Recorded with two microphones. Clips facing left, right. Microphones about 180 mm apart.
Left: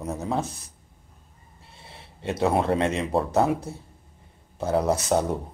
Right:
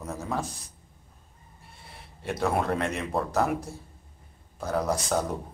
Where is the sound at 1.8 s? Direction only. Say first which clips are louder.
Left 3 dB; 25° left (ahead or behind).